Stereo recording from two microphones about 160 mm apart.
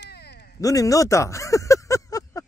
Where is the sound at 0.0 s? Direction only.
90° left.